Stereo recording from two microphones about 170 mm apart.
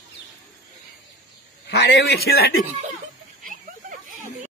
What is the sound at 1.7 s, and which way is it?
Speech, 85° left.